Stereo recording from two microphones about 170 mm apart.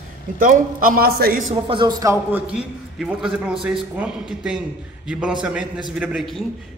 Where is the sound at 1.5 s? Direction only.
30° right (ahead or behind).